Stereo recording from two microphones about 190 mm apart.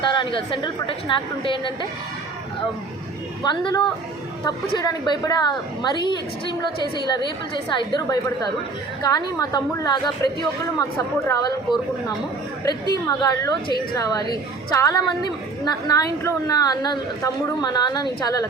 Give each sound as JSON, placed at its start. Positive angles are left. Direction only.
{"t": 0.0, "sound": "a woman's voice", "side_deg": 25}
{"t": 3.4, "sound": "a woman's voice", "side_deg": 25}